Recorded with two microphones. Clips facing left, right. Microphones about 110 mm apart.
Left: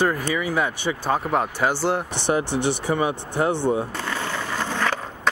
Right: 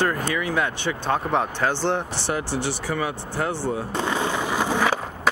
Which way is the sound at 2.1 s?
20° left (ahead or behind).